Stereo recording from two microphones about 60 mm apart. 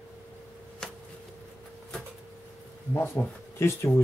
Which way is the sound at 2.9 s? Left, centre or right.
Left.